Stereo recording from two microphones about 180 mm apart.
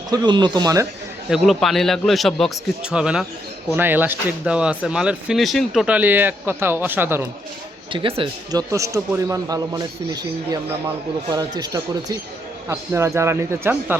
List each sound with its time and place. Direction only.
0.1 s a man's voice: 25° right (ahead or behind)
1.3 s a man's voice: centre (ahead or behind)
7.9 s a man's voice: 30° right (ahead or behind)
8.7 s a man's voice: 15° right (ahead or behind)